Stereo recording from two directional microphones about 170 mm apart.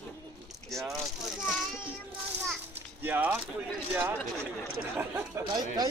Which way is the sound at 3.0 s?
10° right (ahead or behind).